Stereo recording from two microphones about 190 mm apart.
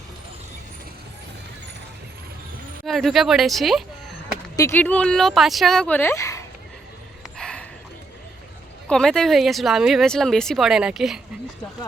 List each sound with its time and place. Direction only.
2.8 s speech: centre (ahead or behind)
4.5 s speech: 15° left (ahead or behind)
7.3 s a sound: 5° left (ahead or behind)
8.9 s speech: 5° left (ahead or behind)